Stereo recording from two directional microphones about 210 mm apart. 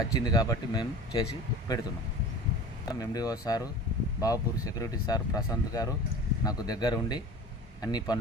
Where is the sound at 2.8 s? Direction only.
15° left (ahead or behind).